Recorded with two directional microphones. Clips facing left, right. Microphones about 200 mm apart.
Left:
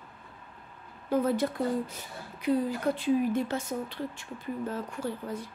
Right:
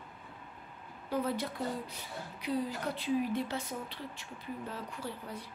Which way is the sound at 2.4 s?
50° left (ahead or behind).